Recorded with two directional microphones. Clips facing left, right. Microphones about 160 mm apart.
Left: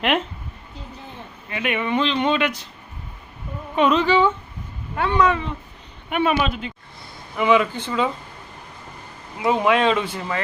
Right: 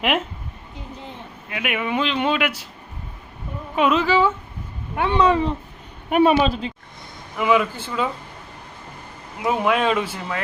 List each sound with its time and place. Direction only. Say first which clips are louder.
1.5 s speech: left 1 dB; 5° right (ahead or behind)
3.8 s speech: left 1 dB; 5° right (ahead or behind)
4.9 s speech: even; 20° right (ahead or behind)
5.2 s a woman's voice: right 5 dB; 35° right (ahead or behind)
7.3 s speech: left 1 dB; 5° right (ahead or behind)
9.4 s speech: left 2 dB; 5° right (ahead or behind)